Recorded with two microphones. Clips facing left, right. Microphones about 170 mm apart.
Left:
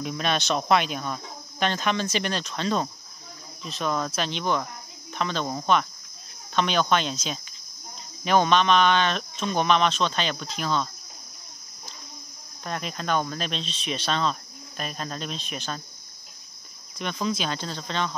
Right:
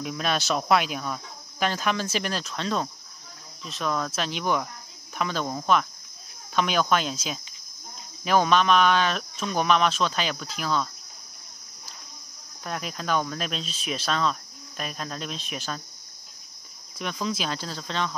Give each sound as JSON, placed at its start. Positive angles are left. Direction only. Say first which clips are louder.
{"t": 0.0, "sound": "speech", "louder": "left 1 dB", "side_deg": -5}
{"t": 12.6, "sound": "speech", "louder": "left 1 dB", "side_deg": -5}
{"t": 17.0, "sound": "speech", "louder": "left 1 dB", "side_deg": 0}